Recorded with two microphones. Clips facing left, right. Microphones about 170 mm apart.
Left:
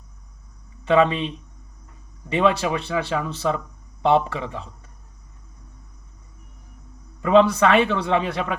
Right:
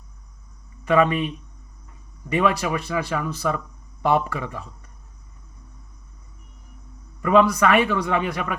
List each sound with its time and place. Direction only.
0.9 s a man's voice: 25° left (ahead or behind)
2.3 s a man's voice: 25° left (ahead or behind)
7.2 s a man's voice: 25° left (ahead or behind)